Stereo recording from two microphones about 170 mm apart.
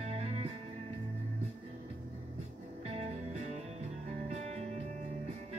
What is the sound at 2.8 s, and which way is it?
Music, 40° right (ahead or behind).